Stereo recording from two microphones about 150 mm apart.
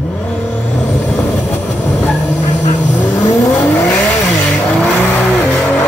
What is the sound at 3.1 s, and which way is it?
Vehicle, 25° left (ahead or behind).